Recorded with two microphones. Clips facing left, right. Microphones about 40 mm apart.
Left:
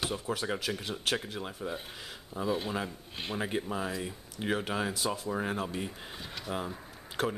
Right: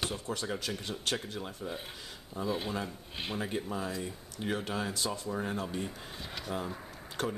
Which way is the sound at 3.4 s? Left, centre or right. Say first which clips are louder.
Left 3 dB; centre.